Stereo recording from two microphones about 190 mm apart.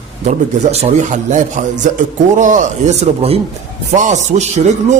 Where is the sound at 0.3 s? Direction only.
35° right (ahead or behind).